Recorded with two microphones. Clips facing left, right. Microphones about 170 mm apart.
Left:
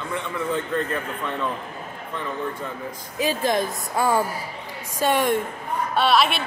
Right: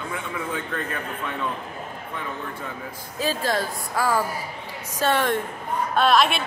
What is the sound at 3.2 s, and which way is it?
Speech, 15° left (ahead or behind).